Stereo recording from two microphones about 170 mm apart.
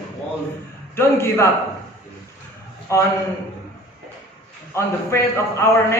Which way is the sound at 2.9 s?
15° left (ahead or behind).